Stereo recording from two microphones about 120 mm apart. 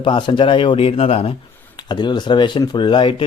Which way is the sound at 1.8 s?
40° left (ahead or behind).